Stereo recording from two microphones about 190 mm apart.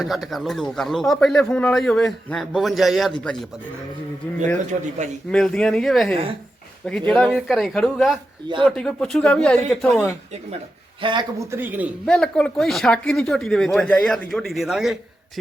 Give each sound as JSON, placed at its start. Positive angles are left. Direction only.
{"t": 0.0, "sound": "a man's voice", "side_deg": 0}
{"t": 5.3, "sound": "a man's voice", "side_deg": 5}
{"t": 11.0, "sound": "a man's voice", "side_deg": -25}
{"t": 11.5, "sound": "speech", "side_deg": -10}
{"t": 12.0, "sound": "a man's voice", "side_deg": 5}